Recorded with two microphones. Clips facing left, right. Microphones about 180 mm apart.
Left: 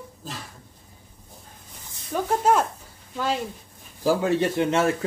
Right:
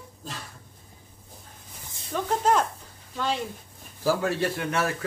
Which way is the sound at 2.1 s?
10° left (ahead or behind).